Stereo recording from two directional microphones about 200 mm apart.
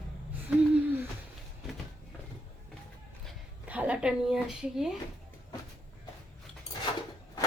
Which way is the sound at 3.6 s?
5° right (ahead or behind).